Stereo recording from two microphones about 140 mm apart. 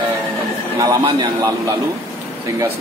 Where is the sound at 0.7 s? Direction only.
25° right (ahead or behind).